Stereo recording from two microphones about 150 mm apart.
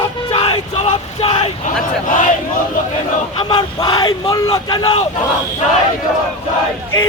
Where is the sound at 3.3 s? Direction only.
30° left (ahead or behind).